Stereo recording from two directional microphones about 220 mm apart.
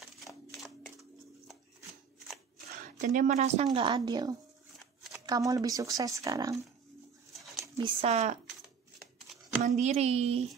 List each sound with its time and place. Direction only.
0.0 s shuffling cards: centre (ahead or behind)
2.7 s speech: 35° right (ahead or behind); by 6.5 s 15° right (ahead or behind)
7.7 s speech: 25° right (ahead or behind)
9.6 s speech: 30° right (ahead or behind)